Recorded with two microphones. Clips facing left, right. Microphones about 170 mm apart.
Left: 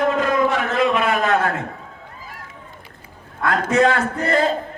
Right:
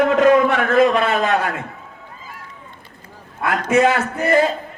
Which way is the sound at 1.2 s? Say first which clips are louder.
Even; 20° right (ahead or behind).